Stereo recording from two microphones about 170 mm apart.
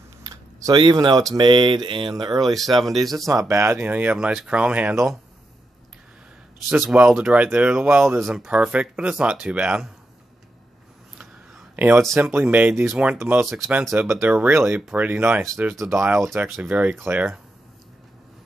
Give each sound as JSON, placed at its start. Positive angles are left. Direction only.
{"t": 0.2, "sound": "speech", "side_deg": -20}
{"t": 2.7, "sound": "speech", "side_deg": 0}
{"t": 3.3, "sound": "speech", "side_deg": -20}
{"t": 6.7, "sound": "speech", "side_deg": -5}
{"t": 11.1, "sound": "a sound", "side_deg": -10}
{"t": 12.2, "sound": "speech", "side_deg": -10}